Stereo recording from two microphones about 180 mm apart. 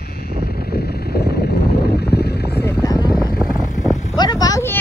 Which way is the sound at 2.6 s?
15° left (ahead or behind).